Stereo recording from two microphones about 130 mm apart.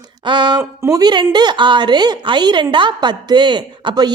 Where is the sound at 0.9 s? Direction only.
30° right (ahead or behind).